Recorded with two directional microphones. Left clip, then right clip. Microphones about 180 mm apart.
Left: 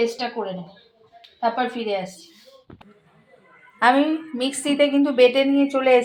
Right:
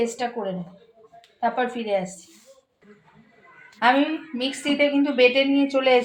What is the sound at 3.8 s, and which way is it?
A woman's voice, 15° left (ahead or behind).